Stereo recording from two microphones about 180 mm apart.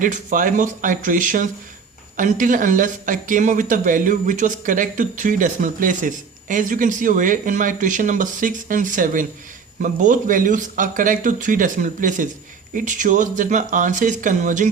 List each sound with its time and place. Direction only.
0.0 s speech: 45° right (ahead or behind)